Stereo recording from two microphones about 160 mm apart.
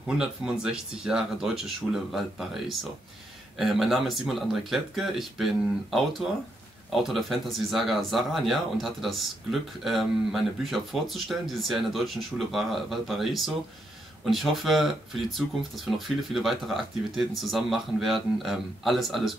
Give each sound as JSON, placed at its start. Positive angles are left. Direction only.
{"t": 0.0, "sound": "speech", "side_deg": -5}
{"t": 16.3, "sound": "speech", "side_deg": 0}